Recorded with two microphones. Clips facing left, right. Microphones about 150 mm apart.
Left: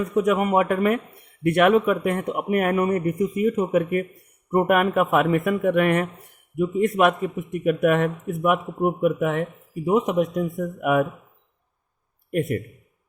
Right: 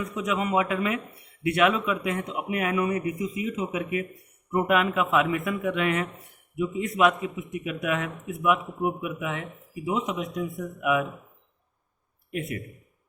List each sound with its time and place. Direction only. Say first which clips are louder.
0.1 s a man's voice: left 7 dB; 55° left (ahead or behind)
12.3 s a man's voice: left 8 dB; 50° left (ahead or behind)